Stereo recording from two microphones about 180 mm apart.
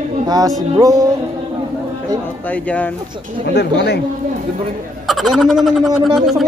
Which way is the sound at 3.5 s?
70° left (ahead or behind).